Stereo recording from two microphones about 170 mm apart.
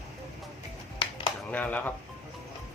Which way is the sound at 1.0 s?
30° left (ahead or behind).